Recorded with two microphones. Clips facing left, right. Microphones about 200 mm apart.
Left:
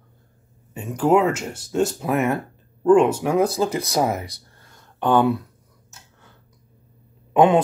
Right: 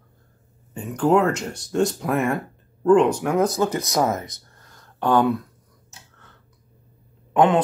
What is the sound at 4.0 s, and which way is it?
Speech, 15° left (ahead or behind).